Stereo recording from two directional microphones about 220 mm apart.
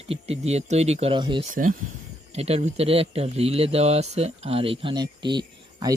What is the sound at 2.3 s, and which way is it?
Speech, 30° right (ahead or behind).